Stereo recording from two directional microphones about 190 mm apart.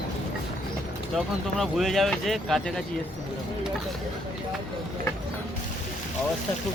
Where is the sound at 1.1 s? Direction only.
Centre (ahead or behind).